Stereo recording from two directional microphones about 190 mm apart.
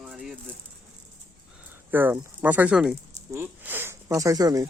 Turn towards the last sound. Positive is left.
turn(degrees=-20)  # may be behind; listen again after turning